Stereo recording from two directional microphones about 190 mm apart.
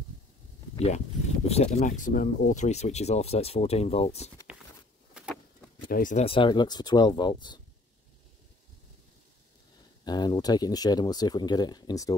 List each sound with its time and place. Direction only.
0.7 s speech: 35° left (ahead or behind)
5.1 s a sound: 5° right (ahead or behind)
5.9 s speech: 50° left (ahead or behind)
6.1 s speech: 30° left (ahead or behind)
10.0 s speech: 20° left (ahead or behind)